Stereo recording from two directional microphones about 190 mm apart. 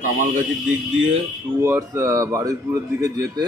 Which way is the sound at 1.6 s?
15° right (ahead or behind).